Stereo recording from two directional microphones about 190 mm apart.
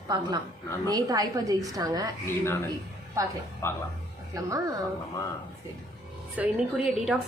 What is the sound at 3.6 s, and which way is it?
Speech, 10° left (ahead or behind).